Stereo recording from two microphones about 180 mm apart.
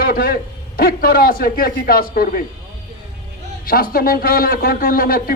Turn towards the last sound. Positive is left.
turn(degrees=55)  # may be behind; listen again after turning